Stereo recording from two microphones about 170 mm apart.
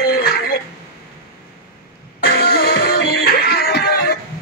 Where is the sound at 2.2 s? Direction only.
65° left (ahead or behind).